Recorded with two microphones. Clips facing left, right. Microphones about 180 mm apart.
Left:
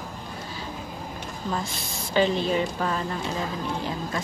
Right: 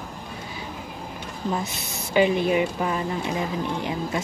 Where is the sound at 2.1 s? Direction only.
10° right (ahead or behind).